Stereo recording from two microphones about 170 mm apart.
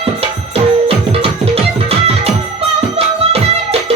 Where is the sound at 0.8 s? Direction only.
35° right (ahead or behind).